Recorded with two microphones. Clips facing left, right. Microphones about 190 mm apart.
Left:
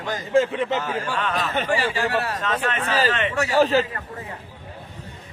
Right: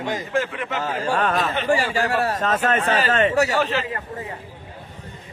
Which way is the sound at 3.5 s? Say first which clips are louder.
Left 4 dB; 40° left (ahead or behind).